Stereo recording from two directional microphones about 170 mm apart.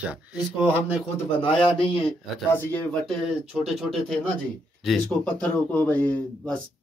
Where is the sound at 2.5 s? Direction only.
10° left (ahead or behind).